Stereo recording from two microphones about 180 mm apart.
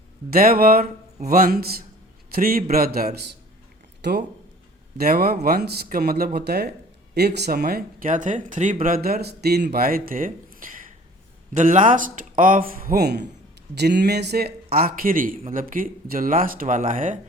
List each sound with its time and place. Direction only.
0.3 s speech: 55° right (ahead or behind)
4.9 s speech: 60° right (ahead or behind)